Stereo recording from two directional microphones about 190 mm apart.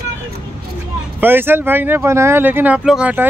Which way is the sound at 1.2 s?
10° right (ahead or behind).